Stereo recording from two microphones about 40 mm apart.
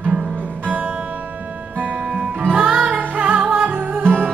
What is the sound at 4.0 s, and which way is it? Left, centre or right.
Music, right.